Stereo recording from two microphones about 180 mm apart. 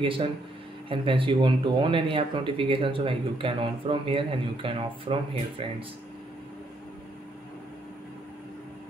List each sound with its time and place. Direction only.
0.0 s speech: 30° right (ahead or behind)